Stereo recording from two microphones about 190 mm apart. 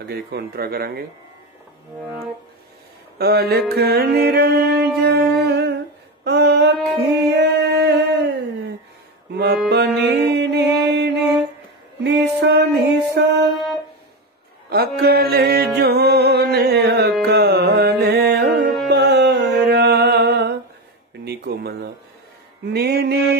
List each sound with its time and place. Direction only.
0.0 s speech: 55° right (ahead or behind)
3.2 s music: 55° right (ahead or behind)
6.2 s female singing: 60° right (ahead or behind)
7.1 s a sound: 60° right (ahead or behind)
9.3 s music: 60° right (ahead or behind)
14.7 s music: 55° right (ahead or behind)
21.2 s a sound: 60° right (ahead or behind)
22.7 s speech: 55° right (ahead or behind)